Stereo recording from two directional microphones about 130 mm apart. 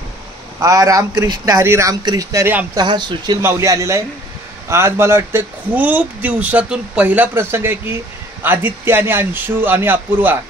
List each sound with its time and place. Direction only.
0.6 s speech: 25° right (ahead or behind)
3.4 s speech: 20° right (ahead or behind)